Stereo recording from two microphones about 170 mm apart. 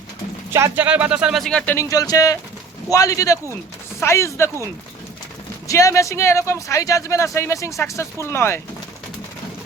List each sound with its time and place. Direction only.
0.5 s speech: 15° right (ahead or behind); by 4.5 s 15° left (ahead or behind)
5.6 s speech: 20° left (ahead or behind)